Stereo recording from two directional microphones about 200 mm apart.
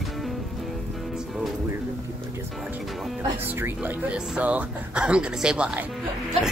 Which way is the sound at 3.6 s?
10° right (ahead or behind).